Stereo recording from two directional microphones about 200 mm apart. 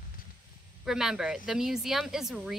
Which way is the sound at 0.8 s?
Centre (ahead or behind).